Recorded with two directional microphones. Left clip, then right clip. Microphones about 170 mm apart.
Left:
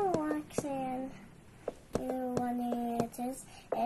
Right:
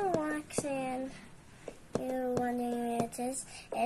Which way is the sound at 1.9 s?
Centre (ahead or behind).